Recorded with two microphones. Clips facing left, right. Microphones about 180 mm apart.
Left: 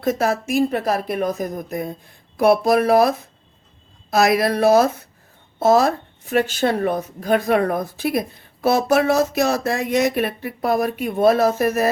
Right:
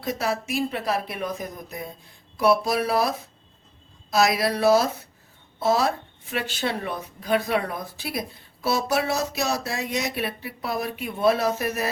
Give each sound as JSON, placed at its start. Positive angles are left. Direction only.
{"t": 0.0, "sound": "speech", "side_deg": 50}